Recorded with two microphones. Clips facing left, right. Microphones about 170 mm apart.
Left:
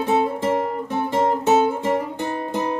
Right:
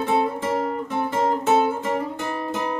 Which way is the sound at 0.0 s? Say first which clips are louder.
Left 2 dB; 20° left (ahead or behind).